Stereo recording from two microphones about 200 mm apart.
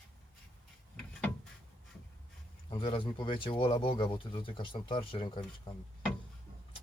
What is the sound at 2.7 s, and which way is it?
Speech, 25° left (ahead or behind).